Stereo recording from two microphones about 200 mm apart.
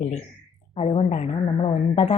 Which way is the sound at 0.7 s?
30° left (ahead or behind).